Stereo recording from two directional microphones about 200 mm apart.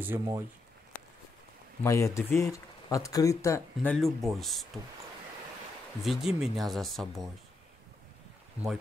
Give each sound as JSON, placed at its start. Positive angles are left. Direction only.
{"t": 0.0, "sound": "speech", "side_deg": -10}
{"t": 1.8, "sound": "speech", "side_deg": 15}
{"t": 6.0, "sound": "speech", "side_deg": 0}